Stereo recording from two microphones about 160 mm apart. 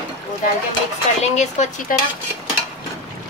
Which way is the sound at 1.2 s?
45° left (ahead or behind).